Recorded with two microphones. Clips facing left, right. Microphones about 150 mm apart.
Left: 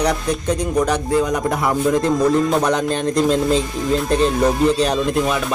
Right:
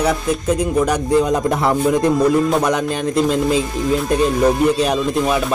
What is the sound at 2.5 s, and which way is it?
Music, 5° right (ahead or behind).